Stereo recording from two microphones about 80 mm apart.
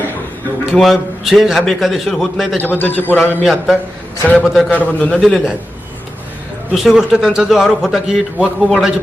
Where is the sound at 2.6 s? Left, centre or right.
Left.